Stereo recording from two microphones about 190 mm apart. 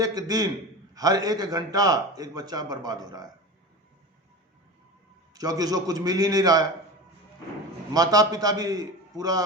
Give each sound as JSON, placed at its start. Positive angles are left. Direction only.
{"t": 0.0, "sound": "speech", "side_deg": -20}
{"t": 5.3, "sound": "speech", "side_deg": -20}
{"t": 7.9, "sound": "speech", "side_deg": -20}